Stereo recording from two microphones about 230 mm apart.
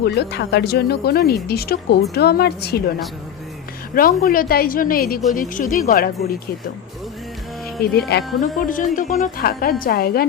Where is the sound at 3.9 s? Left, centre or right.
Left.